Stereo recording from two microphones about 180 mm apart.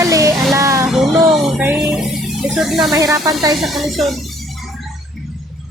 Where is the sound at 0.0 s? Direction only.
15° right (ahead or behind).